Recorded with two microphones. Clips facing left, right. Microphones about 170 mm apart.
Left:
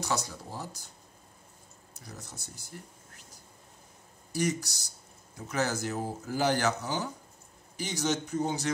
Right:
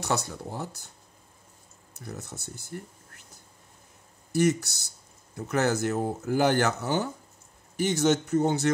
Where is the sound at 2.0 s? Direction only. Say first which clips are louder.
Right 7 dB; 65° right (ahead or behind).